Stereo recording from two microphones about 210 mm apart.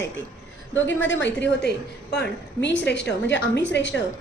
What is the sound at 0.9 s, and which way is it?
A woman's voice, 60° left (ahead or behind).